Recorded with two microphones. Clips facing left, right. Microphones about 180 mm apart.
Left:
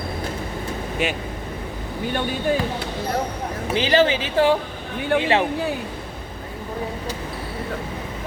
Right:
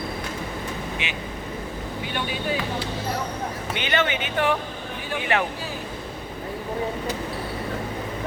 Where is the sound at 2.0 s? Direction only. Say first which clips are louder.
Left 6 dB; 45° left (ahead or behind).